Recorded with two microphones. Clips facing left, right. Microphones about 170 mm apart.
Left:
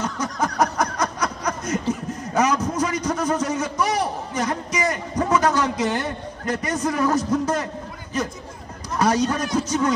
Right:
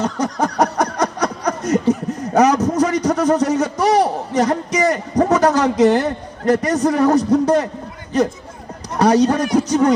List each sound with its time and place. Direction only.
0.0 s a man's voice: 40° right (ahead or behind)
8.9 s a sound: 40° right (ahead or behind)
9.4 s music: 70° right (ahead or behind)